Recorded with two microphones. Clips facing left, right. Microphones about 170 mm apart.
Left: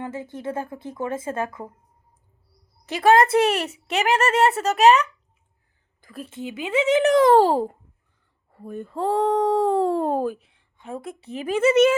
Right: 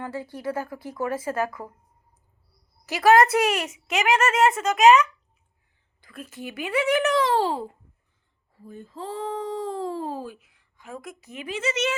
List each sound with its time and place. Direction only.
0.0 s speech: 20° left (ahead or behind)
2.8 s a woman's voice: 30° left (ahead or behind)
6.0 s a sound: 45° left (ahead or behind)
6.2 s speech: 25° left (ahead or behind)
7.0 s a child's voice: 45° left (ahead or behind)
8.5 s speech: 65° left (ahead or behind)
10.3 s speech: 30° left (ahead or behind)
11.4 s a child's voice: 50° left (ahead or behind)